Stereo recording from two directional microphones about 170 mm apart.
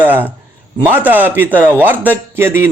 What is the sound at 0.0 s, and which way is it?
A man's voice, 10° right (ahead or behind).